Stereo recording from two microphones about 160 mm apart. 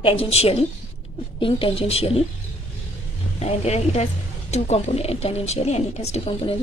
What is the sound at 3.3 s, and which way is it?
A woman's voice, 40° left (ahead or behind).